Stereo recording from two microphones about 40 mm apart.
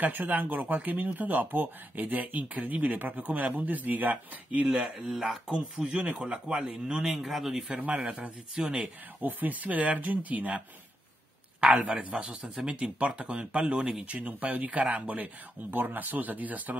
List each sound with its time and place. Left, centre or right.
0.0 s speech: right
4.6 s speech: centre
6.0 s speech: right
7.2 s speech: centre
7.7 s speech: right
8.6 s speech: right
9.2 s speech: right
11.6 s speech: right
12.5 s speech: centre
14.0 s speech: right
14.4 s speech: right
15.7 s speech: right